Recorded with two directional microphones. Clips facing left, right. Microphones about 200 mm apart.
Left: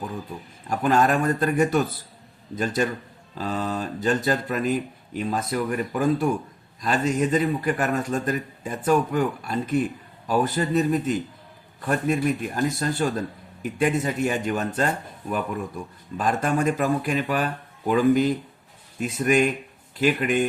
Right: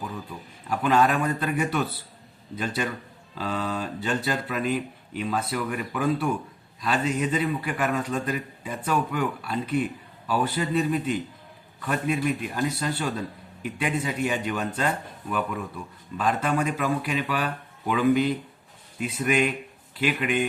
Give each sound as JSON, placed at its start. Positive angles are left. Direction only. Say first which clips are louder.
{"t": 0.7, "sound": "speech", "louder": "left 1 dB", "side_deg": 45}